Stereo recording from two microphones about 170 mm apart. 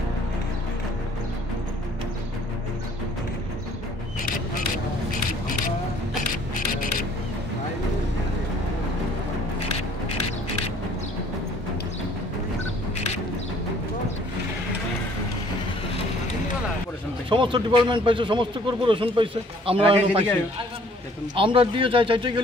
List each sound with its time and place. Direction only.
17.3 s speech: 30° right (ahead or behind)